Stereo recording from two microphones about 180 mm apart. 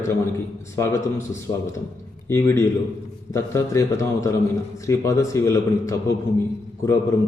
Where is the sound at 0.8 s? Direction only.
15° left (ahead or behind).